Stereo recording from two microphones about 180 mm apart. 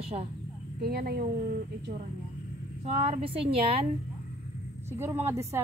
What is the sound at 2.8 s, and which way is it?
Speech, 35° right (ahead or behind).